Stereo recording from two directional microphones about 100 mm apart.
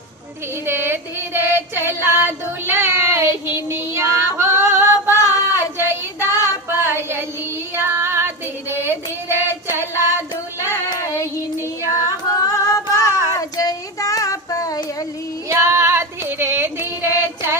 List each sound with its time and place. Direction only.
0.6 s female singing: 25° right (ahead or behind)
5.1 s a sound: 35° left (ahead or behind)
6.1 s child singing: 30° left (ahead or behind)
6.8 s child singing: 25° right (ahead or behind)
7.8 s female singing: 25° right (ahead or behind)
10.0 s child singing: 25° right (ahead or behind)
10.9 s child singing: 30° left (ahead or behind)
11.9 s a sound: 35° left (ahead or behind)
13.4 s child singing: 35° left (ahead or behind)
15.4 s female singing: 25° right (ahead or behind)